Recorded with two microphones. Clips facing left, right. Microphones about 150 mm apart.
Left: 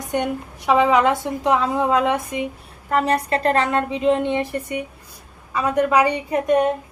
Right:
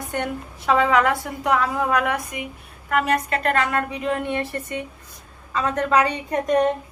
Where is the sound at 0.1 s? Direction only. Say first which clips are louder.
Left 5 dB; 15° left (ahead or behind).